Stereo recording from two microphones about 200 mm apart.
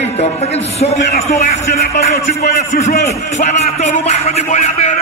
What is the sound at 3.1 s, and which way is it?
A man's voice, 35° left (ahead or behind).